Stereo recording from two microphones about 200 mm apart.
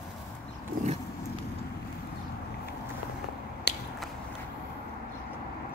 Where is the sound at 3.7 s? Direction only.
55° left (ahead or behind).